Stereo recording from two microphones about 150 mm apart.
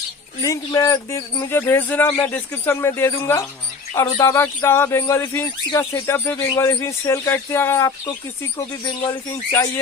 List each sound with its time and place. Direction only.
0.4 s speech: 20° left (ahead or behind)
9.0 s speech: 15° left (ahead or behind)